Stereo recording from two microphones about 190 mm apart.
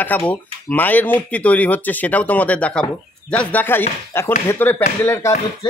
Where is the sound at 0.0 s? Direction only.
10° left (ahead or behind).